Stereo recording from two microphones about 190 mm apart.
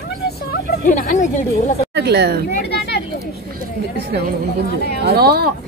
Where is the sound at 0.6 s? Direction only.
45° left (ahead or behind).